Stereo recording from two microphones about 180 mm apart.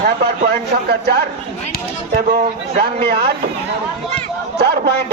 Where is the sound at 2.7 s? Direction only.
60° right (ahead or behind).